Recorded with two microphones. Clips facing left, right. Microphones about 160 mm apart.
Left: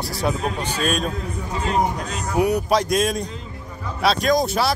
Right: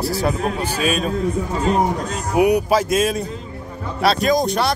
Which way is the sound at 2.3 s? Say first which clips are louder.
Right 4 dB; 15° right (ahead or behind).